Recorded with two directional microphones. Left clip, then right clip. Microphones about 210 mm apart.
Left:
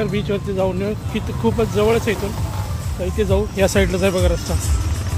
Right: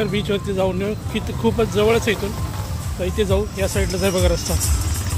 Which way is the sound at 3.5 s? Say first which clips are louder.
Left 6 dB; 50° left (ahead or behind).